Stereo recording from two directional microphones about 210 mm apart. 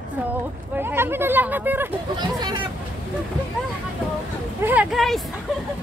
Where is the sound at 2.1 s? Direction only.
20° right (ahead or behind).